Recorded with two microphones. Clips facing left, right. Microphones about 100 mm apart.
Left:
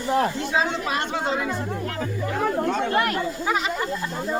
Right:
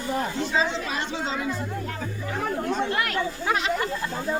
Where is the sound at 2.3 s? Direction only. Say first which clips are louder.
Left 3 dB; 55° left (ahead or behind).